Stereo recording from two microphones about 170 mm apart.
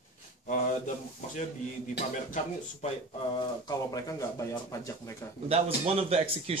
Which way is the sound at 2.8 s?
40° left (ahead or behind).